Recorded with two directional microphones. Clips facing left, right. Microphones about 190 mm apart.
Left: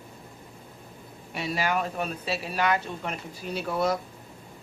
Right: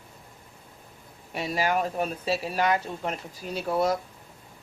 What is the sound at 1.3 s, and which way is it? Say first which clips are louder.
Speech: right 2 dB; 40° right (ahead or behind).